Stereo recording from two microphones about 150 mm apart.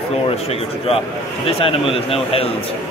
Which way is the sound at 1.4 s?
40° left (ahead or behind).